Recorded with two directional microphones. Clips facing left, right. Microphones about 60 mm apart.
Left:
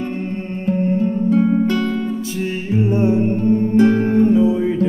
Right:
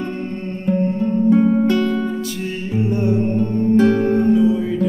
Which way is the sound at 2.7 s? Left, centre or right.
Left.